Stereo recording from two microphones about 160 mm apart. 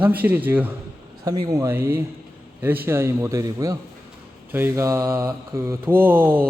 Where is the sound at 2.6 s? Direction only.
10° right (ahead or behind).